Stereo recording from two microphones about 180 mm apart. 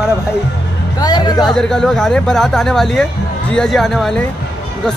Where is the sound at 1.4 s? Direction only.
Centre (ahead or behind).